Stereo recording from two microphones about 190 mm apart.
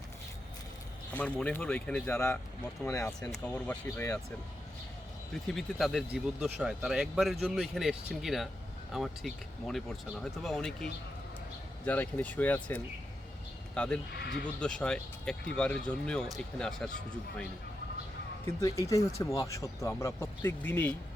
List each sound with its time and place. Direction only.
1.1 s speech: 5° left (ahead or behind)
3.4 s speech: 5° left (ahead or behind)
5.5 s speech: centre (ahead or behind)
11.9 s speech: 10° left (ahead or behind)
13.7 s speech: 5° left (ahead or behind)
14.1 s speech: 60° left (ahead or behind)
14.4 s speech: 5° left (ahead or behind)
18.6 s speech: 15° left (ahead or behind)